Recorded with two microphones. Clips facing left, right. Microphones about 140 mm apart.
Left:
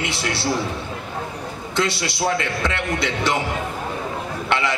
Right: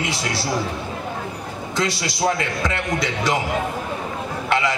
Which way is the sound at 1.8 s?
25° left (ahead or behind).